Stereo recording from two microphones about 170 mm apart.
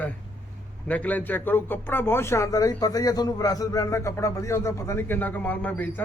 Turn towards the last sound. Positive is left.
turn(degrees=10)  # may be behind; listen again after turning